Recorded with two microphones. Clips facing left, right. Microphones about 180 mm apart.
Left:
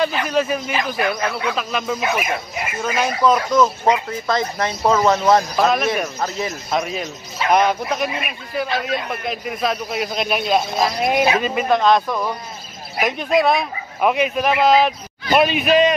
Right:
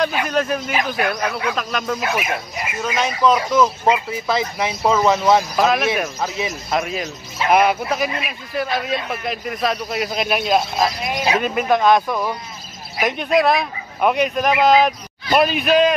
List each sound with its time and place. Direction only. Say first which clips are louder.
0.3 s speech: left 1 dB; 5° left (ahead or behind)
11.0 s speech: left 7 dB; 55° left (ahead or behind)
11.4 s speech: even; centre (ahead or behind)